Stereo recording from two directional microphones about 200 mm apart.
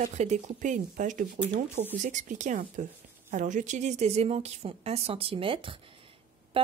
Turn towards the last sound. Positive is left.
turn(degrees=-25)  # may be behind; listen again after turning